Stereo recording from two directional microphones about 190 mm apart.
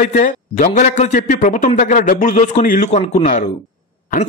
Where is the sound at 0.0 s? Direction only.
45° left (ahead or behind).